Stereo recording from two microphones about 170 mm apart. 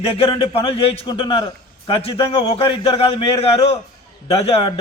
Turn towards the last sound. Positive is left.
turn(degrees=35)  # may be behind; listen again after turning